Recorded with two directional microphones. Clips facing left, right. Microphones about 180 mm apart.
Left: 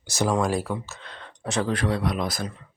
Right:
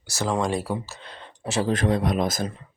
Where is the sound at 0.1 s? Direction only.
15° left (ahead or behind).